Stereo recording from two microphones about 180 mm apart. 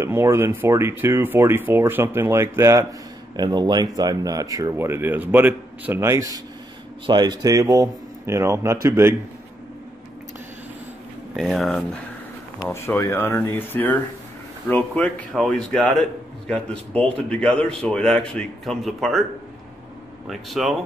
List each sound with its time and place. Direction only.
0.0 s speech: 15° right (ahead or behind)
11.3 s a man's voice: centre (ahead or behind)
12.6 s a man's voice: 10° left (ahead or behind)
20.2 s a man's voice: centre (ahead or behind)